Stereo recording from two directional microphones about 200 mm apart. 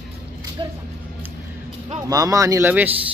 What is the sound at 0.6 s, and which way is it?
Speech, 20° right (ahead or behind).